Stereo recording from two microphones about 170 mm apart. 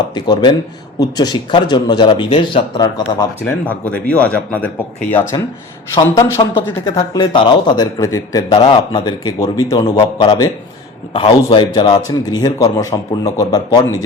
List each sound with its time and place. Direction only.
0.1 s speech: 25° left (ahead or behind)
3.4 s speech: 10° left (ahead or behind)